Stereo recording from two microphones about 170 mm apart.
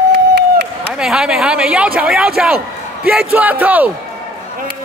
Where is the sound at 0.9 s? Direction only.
5° right (ahead or behind).